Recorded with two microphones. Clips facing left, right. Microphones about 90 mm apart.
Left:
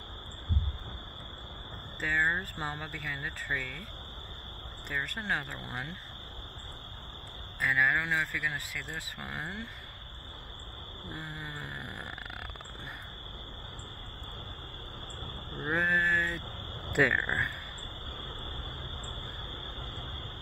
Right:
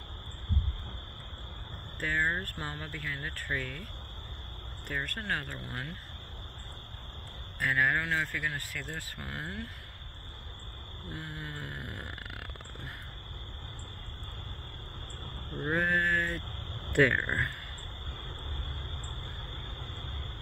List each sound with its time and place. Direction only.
2.0 s speech: 15° left (ahead or behind)
4.8 s speech: 15° left (ahead or behind)
7.6 s speech: 5° left (ahead or behind)
11.1 s snoring: 20° left (ahead or behind)
15.5 s speech: 10° left (ahead or behind)